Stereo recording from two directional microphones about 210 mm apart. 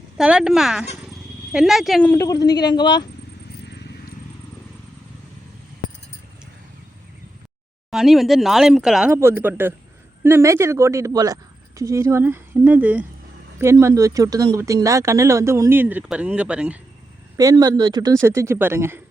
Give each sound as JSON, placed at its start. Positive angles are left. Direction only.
{"t": 0.2, "sound": "speech", "side_deg": -5}
{"t": 2.5, "sound": "speech", "side_deg": 50}
{"t": 2.7, "sound": "speech", "side_deg": 20}
{"t": 7.9, "sound": "speech", "side_deg": 0}
{"t": 17.3, "sound": "speech", "side_deg": -15}